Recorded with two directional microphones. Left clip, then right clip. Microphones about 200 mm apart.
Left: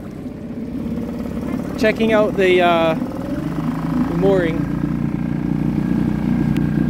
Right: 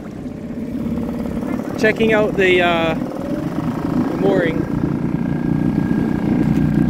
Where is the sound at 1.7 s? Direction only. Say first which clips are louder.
Right 1 dB; 25° left (ahead or behind).